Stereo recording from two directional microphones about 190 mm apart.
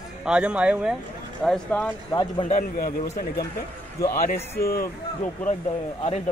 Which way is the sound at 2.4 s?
40° left (ahead or behind).